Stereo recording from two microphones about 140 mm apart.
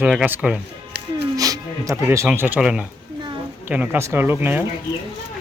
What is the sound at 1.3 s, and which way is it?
Speech, 25° right (ahead or behind).